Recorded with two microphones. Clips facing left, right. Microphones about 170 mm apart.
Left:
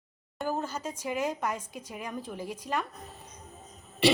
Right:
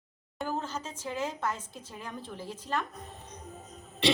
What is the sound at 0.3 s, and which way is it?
Speech, 10° left (ahead or behind).